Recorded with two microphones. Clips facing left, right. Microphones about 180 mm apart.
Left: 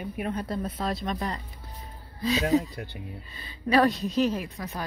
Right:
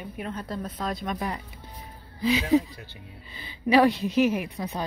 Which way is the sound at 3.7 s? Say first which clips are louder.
Right 2 dB; 10° right (ahead or behind).